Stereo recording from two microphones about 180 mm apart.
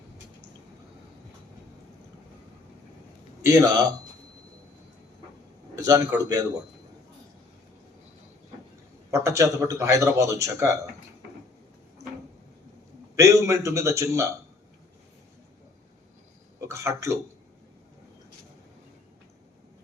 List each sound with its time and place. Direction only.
3.4 s a man's voice: 20° right (ahead or behind)
5.7 s a sound: 20° right (ahead or behind)
6.2 s a man's voice: 20° right (ahead or behind)
9.0 s a man's voice: 15° right (ahead or behind)
13.1 s a man's voice: 15° right (ahead or behind)
16.6 s speech: 15° right (ahead or behind)